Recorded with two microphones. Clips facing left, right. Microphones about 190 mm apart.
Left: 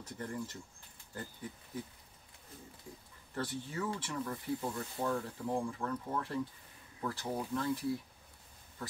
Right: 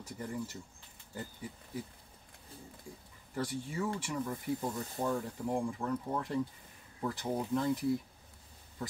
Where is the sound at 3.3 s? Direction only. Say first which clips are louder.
Right 2 dB; 10° right (ahead or behind).